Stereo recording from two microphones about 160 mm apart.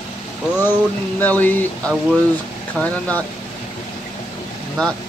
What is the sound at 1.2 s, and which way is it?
Speech, 10° left (ahead or behind).